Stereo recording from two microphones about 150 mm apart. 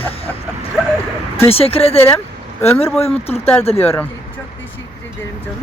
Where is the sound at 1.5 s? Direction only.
40° left (ahead or behind).